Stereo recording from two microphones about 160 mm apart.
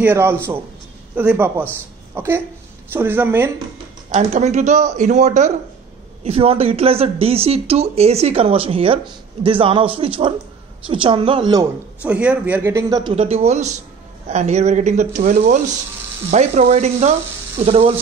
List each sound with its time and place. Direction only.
0.0 s a man's voice: 15° right (ahead or behind)
4.1 s speech: 45° right (ahead or behind)
6.2 s speech: 35° right (ahead or behind)
12.0 s a man's voice: 10° right (ahead or behind)
13.0 s speech: 35° right (ahead or behind)